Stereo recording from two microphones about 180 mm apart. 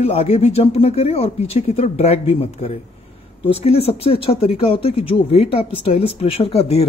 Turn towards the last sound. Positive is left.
turn(degrees=30)  # may be behind; listen again after turning